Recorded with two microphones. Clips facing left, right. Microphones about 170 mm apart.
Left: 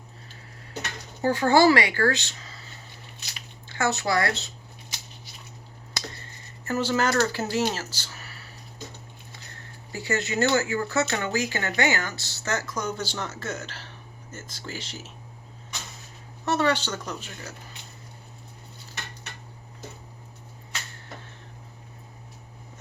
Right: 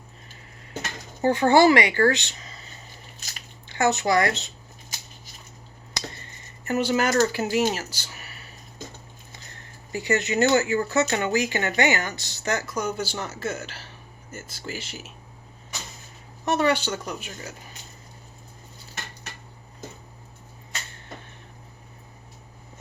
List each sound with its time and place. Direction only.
1.2 s speech: 20° right (ahead or behind)
3.7 s speech: 20° right (ahead or behind)
6.7 s speech: 15° right (ahead or behind)
9.9 s speech: 20° right (ahead or behind)
16.5 s speech: 10° right (ahead or behind)